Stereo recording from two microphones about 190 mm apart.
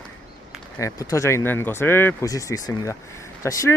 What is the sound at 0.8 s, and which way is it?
Speech, 15° left (ahead or behind).